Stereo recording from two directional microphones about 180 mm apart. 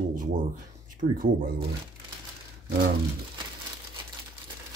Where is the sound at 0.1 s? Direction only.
45° right (ahead or behind).